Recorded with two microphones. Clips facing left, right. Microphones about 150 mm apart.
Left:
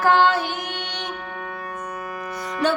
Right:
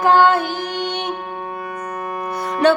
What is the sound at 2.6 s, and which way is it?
Music, 70° right (ahead or behind).